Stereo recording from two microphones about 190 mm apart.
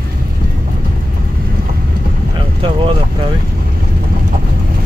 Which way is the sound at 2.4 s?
30° right (ahead or behind).